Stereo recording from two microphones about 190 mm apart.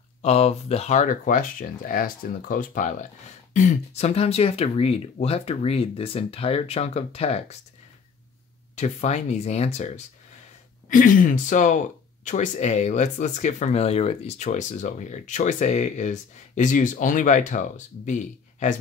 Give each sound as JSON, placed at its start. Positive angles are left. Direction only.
{"t": 0.2, "sound": "speech", "side_deg": 35}
{"t": 8.7, "sound": "speech", "side_deg": 40}